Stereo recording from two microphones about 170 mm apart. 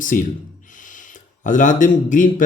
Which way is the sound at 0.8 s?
50° left (ahead or behind).